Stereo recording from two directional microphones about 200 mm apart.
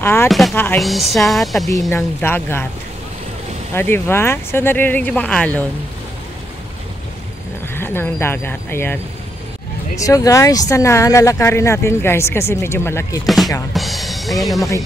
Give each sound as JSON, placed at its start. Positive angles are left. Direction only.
{"t": 0.0, "sound": "speech", "side_deg": 10}
{"t": 0.3, "sound": "speech", "side_deg": 0}
{"t": 1.9, "sound": "speech", "side_deg": 10}
{"t": 3.7, "sound": "speech", "side_deg": 10}
{"t": 7.7, "sound": "speech", "side_deg": 10}
{"t": 13.7, "sound": "speech", "side_deg": 0}